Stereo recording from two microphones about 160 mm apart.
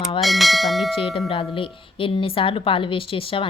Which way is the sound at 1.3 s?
35° left (ahead or behind).